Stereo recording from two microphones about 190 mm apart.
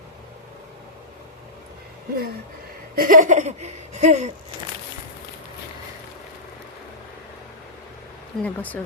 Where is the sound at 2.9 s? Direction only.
45° right (ahead or behind).